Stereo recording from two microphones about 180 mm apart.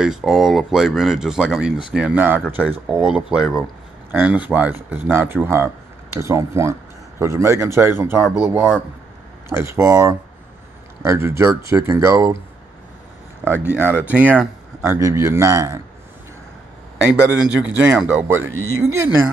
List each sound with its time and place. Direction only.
0.0 s speech: 5° right (ahead or behind)
13.4 s speech: 10° right (ahead or behind)
17.4 s speech: 5° right (ahead or behind)